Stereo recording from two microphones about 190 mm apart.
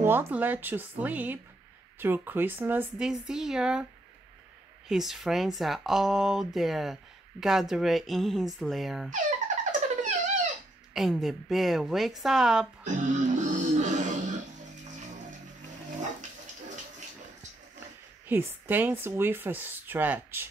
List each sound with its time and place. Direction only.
0.0 s speech: 10° right (ahead or behind)
4.8 s speech: centre (ahead or behind)
9.7 s a sound: 40° right (ahead or behind)
10.9 s speech: centre (ahead or behind)
12.8 s music: 40° right (ahead or behind)
16.2 s pig: 40° right (ahead or behind)
18.2 s speech: 10° right (ahead or behind)